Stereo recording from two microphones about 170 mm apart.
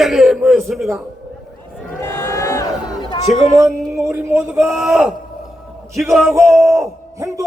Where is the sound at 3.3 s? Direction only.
5° right (ahead or behind).